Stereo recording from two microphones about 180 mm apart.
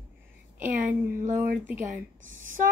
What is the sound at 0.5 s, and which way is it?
Speech, 45° right (ahead or behind).